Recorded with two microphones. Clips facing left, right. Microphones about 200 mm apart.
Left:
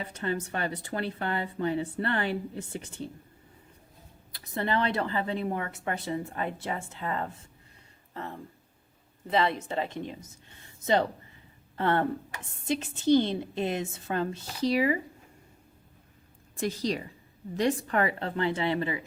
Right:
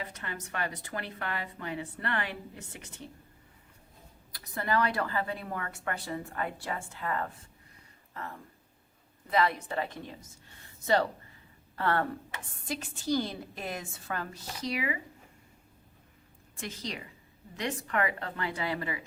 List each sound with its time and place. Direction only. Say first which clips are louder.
0.0 s speech: left 8 dB; 30° left (ahead or behind)
4.3 s speech: left 2 dB; 25° left (ahead or behind)
16.6 s speech: left 10 dB; 35° left (ahead or behind)